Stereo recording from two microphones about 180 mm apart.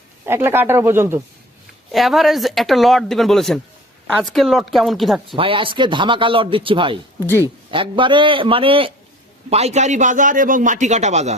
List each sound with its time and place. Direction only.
0.3 s speech: 15° right (ahead or behind)
1.9 s speech: centre (ahead or behind)
5.4 s speech: 30° right (ahead or behind)
7.2 s speech: 10° left (ahead or behind)
7.7 s a man's voice: 30° right (ahead or behind)